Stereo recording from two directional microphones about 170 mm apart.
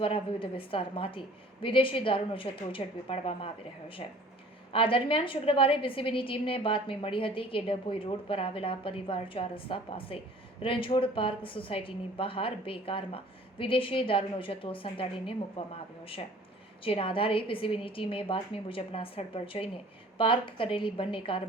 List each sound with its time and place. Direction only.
0.0 s a woman's voice: 30° left (ahead or behind)